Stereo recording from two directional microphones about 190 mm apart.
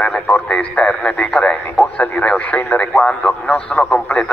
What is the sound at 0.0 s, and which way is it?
Speech, 5° left (ahead or behind).